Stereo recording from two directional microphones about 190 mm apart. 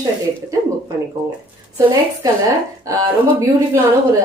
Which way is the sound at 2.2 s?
20° right (ahead or behind).